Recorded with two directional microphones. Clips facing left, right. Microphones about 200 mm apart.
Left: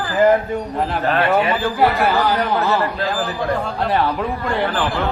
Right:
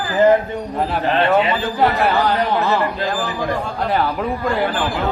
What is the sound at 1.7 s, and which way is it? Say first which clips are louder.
A man's voice: right 1 dB; centre (ahead or behind).